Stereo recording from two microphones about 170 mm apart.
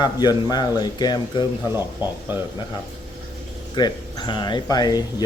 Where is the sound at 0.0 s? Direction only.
25° left (ahead or behind).